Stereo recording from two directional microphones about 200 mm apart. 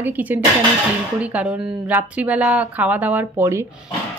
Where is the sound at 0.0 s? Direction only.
10° right (ahead or behind).